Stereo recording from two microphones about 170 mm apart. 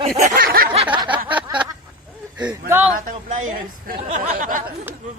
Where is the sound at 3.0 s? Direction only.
50° right (ahead or behind).